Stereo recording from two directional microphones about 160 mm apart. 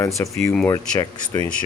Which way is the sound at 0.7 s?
25° left (ahead or behind).